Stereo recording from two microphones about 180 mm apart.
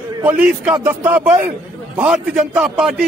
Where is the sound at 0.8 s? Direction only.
10° right (ahead or behind).